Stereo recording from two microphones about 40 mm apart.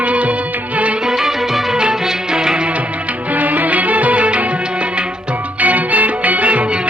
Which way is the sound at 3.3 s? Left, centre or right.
Right.